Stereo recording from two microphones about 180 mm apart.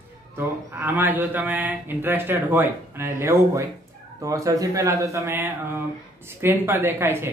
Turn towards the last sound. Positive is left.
turn(degrees=-10)  # may be behind; listen again after turning